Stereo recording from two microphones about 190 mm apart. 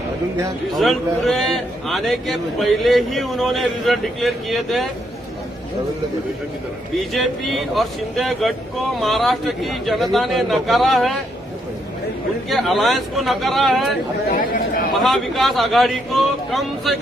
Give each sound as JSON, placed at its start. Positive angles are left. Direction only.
{"t": 0.8, "sound": "a man's voice", "side_deg": 0}
{"t": 7.0, "sound": "a man's voice", "side_deg": 0}
{"t": 12.5, "sound": "a man's voice", "side_deg": 0}
{"t": 14.3, "sound": "speech", "side_deg": 45}
{"t": 15.0, "sound": "a man's voice", "side_deg": 0}